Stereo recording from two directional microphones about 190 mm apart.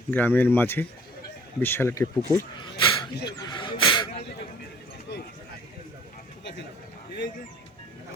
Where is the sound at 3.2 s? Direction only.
20° left (ahead or behind).